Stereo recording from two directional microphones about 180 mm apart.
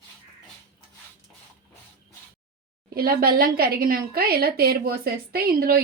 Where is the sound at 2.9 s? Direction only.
55° right (ahead or behind).